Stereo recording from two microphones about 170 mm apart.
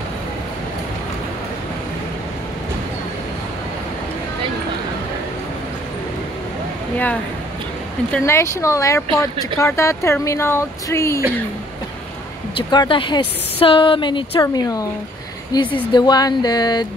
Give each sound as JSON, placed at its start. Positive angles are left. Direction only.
{"t": 8.1, "sound": "speech", "side_deg": 15}
{"t": 12.5, "sound": "speech", "side_deg": 30}